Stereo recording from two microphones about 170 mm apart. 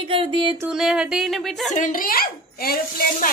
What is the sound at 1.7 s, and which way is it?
A child's voice, 50° left (ahead or behind).